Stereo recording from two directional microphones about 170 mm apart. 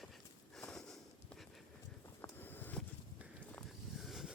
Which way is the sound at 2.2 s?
10° left (ahead or behind).